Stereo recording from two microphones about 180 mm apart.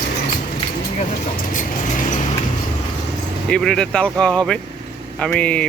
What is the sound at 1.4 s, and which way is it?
Vehicle, 45° left (ahead or behind).